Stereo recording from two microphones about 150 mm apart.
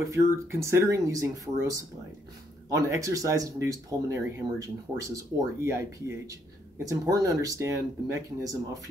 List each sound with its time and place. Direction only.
0.0 s speech: 20° right (ahead or behind)
2.9 s speech: 20° right (ahead or behind)